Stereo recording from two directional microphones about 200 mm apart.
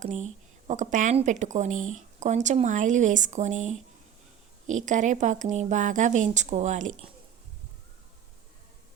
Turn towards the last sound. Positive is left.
turn(degrees=-35)  # may be behind; listen again after turning